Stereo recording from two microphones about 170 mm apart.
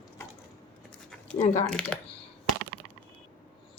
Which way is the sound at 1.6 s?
5° left (ahead or behind).